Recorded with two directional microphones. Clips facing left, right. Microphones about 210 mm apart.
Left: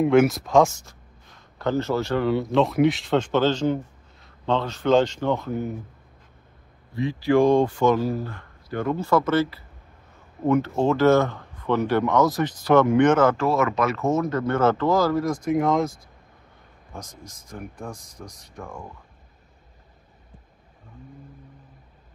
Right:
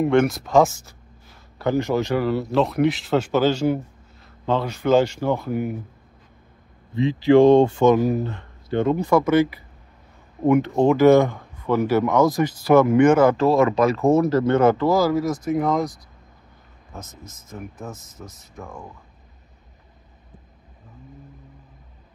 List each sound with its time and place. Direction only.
0.0 s speech: centre (ahead or behind); by 2.2 s 15° right (ahead or behind)
2.2 s speech: centre (ahead or behind)
6.9 s speech: 20° right (ahead or behind)
13.4 s speech: 35° right (ahead or behind); by 15.9 s centre (ahead or behind)
16.9 s speech: 5° right (ahead or behind)